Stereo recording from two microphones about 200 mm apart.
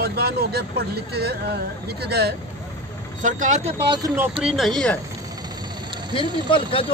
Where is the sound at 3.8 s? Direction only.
20° right (ahead or behind).